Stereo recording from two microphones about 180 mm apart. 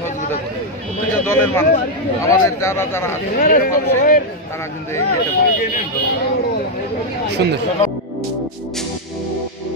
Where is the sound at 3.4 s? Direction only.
45° left (ahead or behind).